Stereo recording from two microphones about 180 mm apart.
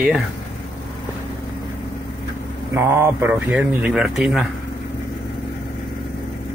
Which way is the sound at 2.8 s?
15° right (ahead or behind).